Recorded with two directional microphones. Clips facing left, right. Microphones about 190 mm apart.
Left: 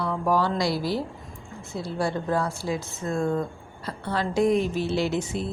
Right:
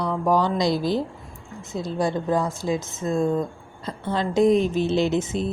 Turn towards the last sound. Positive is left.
turn(degrees=-20)  # may be behind; listen again after turning